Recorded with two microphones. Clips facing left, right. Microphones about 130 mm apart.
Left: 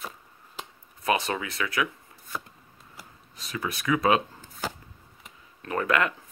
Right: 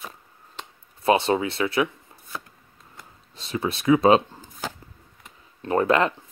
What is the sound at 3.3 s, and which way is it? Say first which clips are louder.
Speech: right 6 dB; 30° right (ahead or behind).